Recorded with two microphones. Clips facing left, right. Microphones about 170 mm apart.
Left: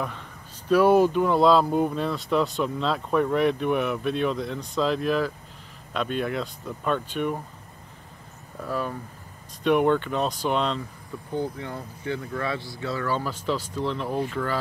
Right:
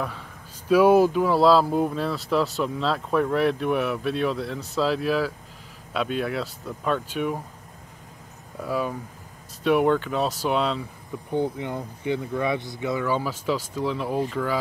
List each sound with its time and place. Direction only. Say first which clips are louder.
0.7 s speech: right 1 dB; 10° right (ahead or behind)
8.5 s speech: right 2 dB; 10° right (ahead or behind)
11.2 s speech: right 4 dB; 15° right (ahead or behind)